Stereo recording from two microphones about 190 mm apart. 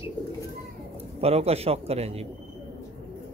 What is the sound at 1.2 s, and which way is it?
A man's voice, 30° right (ahead or behind).